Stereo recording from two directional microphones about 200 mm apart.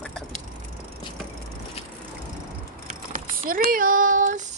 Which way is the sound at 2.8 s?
45° right (ahead or behind).